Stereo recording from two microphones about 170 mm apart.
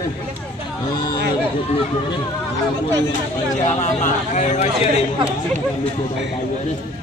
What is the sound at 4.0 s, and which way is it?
A man's voice, 45° left (ahead or behind).